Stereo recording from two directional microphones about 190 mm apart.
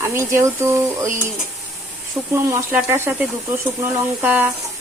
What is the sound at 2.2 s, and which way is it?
A woman's voice, 15° right (ahead or behind).